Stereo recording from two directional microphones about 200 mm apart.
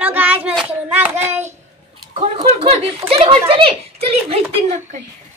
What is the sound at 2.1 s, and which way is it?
Speech, 30° right (ahead or behind).